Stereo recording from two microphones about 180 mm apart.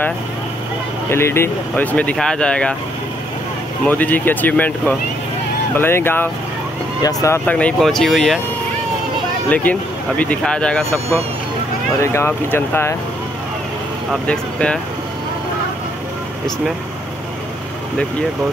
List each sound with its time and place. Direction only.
1.1 s speech: 15° left (ahead or behind)
3.8 s speech: 10° left (ahead or behind)
9.5 s speech: 10° left (ahead or behind)
12.0 s speech: 15° left (ahead or behind)
14.2 s speech: 5° left (ahead or behind)